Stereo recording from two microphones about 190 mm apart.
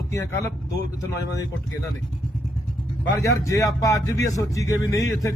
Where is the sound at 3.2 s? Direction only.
15° left (ahead or behind).